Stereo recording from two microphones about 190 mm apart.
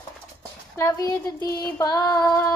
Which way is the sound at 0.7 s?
20° left (ahead or behind).